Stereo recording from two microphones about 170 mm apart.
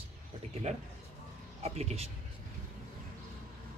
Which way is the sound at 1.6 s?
40° right (ahead or behind).